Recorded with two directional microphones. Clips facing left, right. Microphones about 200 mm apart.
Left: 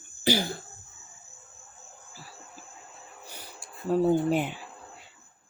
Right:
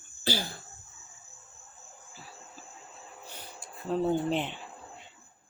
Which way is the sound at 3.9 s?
10° left (ahead or behind).